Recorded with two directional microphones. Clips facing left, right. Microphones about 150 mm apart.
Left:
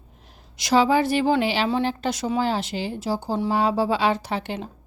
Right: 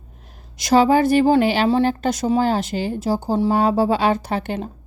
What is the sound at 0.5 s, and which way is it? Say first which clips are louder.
A woman's voice: right 4 dB; 45° right (ahead or behind).